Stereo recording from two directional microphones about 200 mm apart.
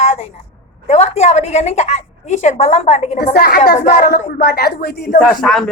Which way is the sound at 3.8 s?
40° left (ahead or behind).